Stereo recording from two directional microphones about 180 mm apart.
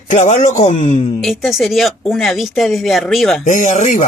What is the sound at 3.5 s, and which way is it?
Speech, 45° left (ahead or behind).